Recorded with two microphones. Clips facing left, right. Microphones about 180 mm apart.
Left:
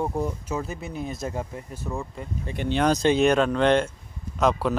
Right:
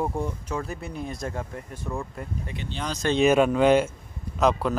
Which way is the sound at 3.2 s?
5° right (ahead or behind).